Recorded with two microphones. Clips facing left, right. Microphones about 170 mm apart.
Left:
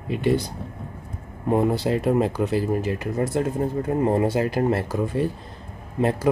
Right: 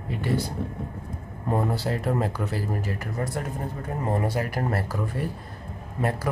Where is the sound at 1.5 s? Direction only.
20° left (ahead or behind).